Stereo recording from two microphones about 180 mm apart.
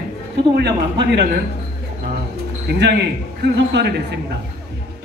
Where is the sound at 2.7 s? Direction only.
65° right (ahead or behind).